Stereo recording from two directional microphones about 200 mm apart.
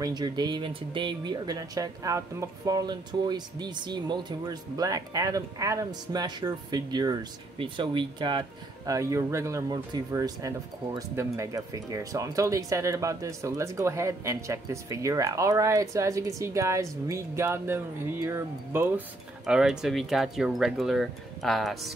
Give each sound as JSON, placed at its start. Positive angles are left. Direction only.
{"t": 0.0, "sound": "speech", "side_deg": -20}